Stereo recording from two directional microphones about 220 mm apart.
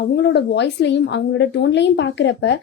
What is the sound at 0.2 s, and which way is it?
A woman's voice, 50° left (ahead or behind).